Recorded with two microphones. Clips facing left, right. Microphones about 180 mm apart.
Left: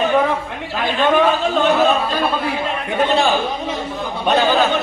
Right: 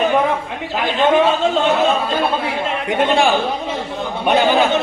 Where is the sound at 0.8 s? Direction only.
15° right (ahead or behind).